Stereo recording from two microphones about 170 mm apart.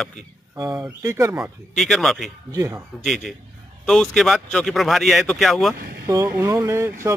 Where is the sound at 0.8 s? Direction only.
15° right (ahead or behind).